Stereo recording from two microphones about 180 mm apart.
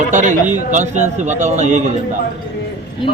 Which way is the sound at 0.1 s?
45° right (ahead or behind).